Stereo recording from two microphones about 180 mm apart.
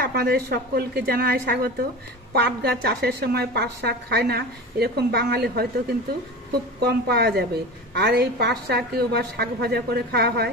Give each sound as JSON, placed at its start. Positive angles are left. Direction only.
{"t": 0.0, "sound": "a woman's voice", "side_deg": -60}
{"t": 6.8, "sound": "a woman's voice", "side_deg": -60}